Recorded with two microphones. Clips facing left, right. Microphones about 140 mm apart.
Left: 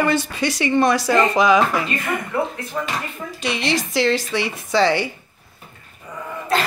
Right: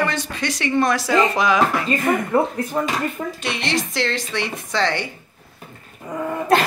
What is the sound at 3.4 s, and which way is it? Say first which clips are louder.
Speech: left 4 dB; centre (ahead or behind).